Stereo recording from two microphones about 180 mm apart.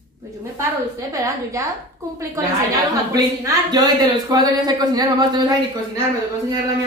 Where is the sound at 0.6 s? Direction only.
20° right (ahead or behind).